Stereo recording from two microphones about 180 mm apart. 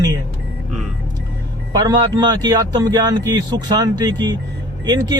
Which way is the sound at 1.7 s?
20° right (ahead or behind).